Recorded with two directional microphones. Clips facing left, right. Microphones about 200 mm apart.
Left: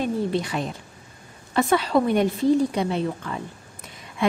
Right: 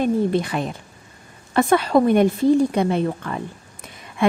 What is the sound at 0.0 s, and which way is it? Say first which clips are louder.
A woman's voice: right 5 dB; 50° right (ahead or behind).